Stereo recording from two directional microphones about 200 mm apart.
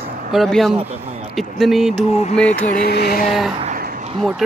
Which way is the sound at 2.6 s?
45° left (ahead or behind).